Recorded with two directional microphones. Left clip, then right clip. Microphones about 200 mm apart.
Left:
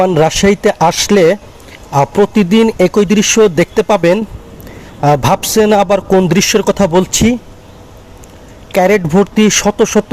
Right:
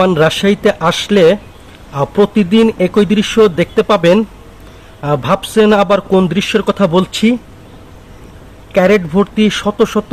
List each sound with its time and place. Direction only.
0.0 s a man's voice: 20° left (ahead or behind)
8.7 s speech: 25° left (ahead or behind)